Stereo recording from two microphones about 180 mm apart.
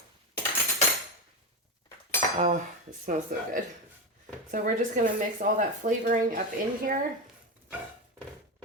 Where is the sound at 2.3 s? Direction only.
45° right (ahead or behind).